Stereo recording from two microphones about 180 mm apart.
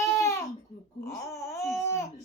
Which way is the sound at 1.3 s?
15° left (ahead or behind).